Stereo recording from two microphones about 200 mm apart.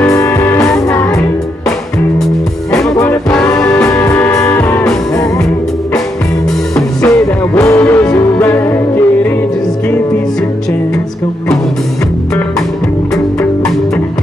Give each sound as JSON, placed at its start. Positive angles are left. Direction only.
{"t": 0.1, "sound": "music", "side_deg": 15}
{"t": 3.0, "sound": "music", "side_deg": 15}
{"t": 6.7, "sound": "music", "side_deg": 5}
{"t": 13.1, "sound": "music", "side_deg": 0}